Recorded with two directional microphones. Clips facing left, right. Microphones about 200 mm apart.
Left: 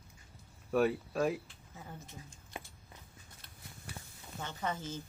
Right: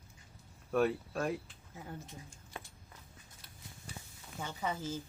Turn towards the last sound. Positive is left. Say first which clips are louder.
# right 1 dB
turn(degrees=-10)  # may be behind; listen again after turning